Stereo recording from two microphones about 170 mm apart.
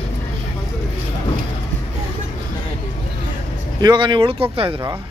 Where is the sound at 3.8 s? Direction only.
25° right (ahead or behind).